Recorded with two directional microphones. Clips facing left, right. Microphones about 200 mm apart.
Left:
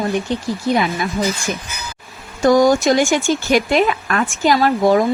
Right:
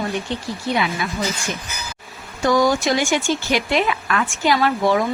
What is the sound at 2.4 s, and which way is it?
Speech, 45° left (ahead or behind).